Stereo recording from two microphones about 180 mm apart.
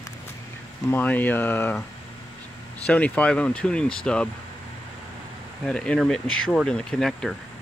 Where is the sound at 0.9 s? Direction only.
10° left (ahead or behind).